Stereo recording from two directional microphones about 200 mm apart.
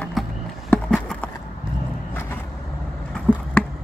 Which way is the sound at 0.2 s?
Centre (ahead or behind).